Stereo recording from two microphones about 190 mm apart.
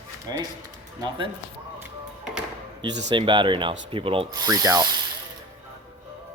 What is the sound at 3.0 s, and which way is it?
Ratchet, 25° right (ahead or behind).